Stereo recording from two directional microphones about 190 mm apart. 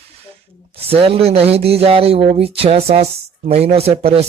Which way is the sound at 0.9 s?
30° right (ahead or behind).